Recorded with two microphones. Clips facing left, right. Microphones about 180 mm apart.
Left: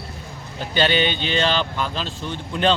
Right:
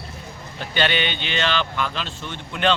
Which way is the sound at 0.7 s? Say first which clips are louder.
Left 3 dB; 40° left (ahead or behind).